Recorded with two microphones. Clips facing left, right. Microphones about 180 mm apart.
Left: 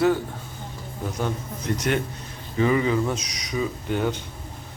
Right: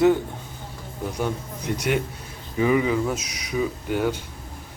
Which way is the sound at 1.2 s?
10° right (ahead or behind).